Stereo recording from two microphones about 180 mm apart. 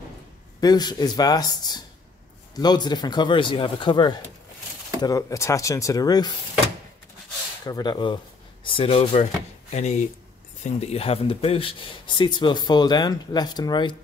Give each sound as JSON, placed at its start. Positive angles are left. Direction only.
{"t": 0.6, "sound": "speech", "side_deg": 20}
{"t": 7.6, "sound": "speech", "side_deg": 20}